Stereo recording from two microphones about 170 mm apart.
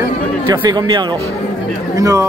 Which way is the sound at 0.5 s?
25° right (ahead or behind).